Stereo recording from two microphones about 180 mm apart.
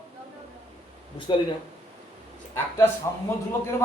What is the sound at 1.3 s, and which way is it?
Speech, 25° left (ahead or behind).